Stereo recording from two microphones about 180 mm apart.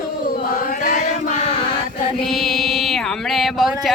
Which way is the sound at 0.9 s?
40° left (ahead or behind).